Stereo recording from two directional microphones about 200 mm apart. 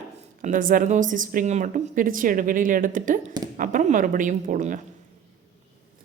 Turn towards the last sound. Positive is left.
turn(degrees=-40)  # may be behind; listen again after turning